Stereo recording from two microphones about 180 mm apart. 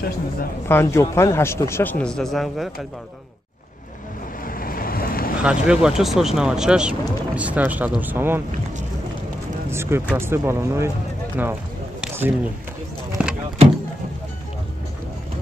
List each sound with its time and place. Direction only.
0.7 s a man's voice: 15° left (ahead or behind)
4.5 s boat: 50° left (ahead or behind)
5.4 s speech: 5° right (ahead or behind)
9.7 s speech: 15° right (ahead or behind)
12.0 s a sound: 10° right (ahead or behind)
13.2 s vehicle: 5° right (ahead or behind)